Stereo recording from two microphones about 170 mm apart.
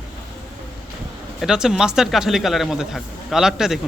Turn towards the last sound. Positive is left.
turn(degrees=0)  # may be behind; listen again after turning